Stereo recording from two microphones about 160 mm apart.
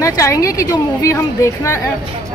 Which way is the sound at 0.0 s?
20° left (ahead or behind).